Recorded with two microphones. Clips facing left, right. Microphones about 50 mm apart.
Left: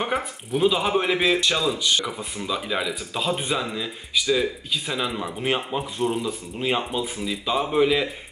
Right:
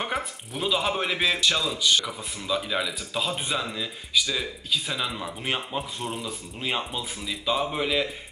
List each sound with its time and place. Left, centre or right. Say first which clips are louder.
0.0 s a man's voice: left 4 dB; centre